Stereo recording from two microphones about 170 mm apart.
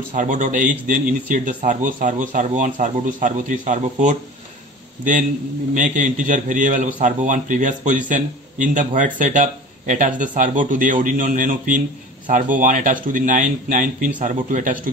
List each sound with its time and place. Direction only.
0.1 s speech: 50° right (ahead or behind)
5.8 s speech: 50° right (ahead or behind)